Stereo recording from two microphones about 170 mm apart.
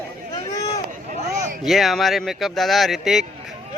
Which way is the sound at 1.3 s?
45° right (ahead or behind).